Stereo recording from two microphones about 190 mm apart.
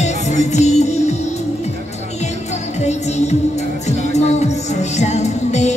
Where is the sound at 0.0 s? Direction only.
35° left (ahead or behind).